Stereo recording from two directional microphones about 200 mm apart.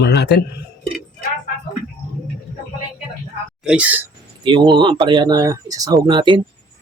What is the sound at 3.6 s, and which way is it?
Speech, 5° right (ahead or behind).